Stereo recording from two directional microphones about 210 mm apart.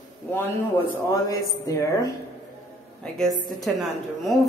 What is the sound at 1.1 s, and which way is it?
A man's voice, 15° left (ahead or behind).